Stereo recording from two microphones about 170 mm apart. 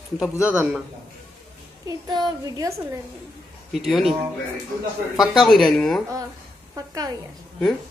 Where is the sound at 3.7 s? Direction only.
Centre (ahead or behind).